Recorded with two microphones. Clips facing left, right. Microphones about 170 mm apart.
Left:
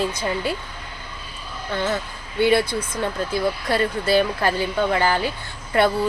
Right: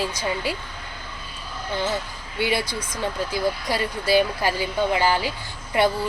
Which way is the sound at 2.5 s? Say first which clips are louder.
Left 6 dB; 55° left (ahead or behind).